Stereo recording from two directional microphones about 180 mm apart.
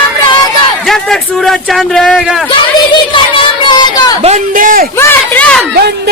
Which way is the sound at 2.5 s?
30° left (ahead or behind).